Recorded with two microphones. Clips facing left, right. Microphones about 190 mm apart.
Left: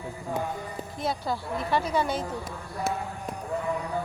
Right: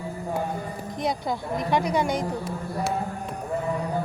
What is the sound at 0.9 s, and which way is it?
A woman's voice, 15° right (ahead or behind).